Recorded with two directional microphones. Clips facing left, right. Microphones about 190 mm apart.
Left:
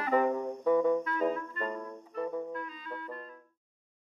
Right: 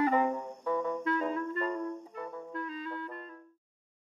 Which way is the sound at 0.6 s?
20° left (ahead or behind).